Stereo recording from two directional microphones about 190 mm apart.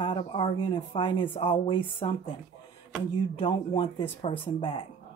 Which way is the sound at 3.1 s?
30° left (ahead or behind).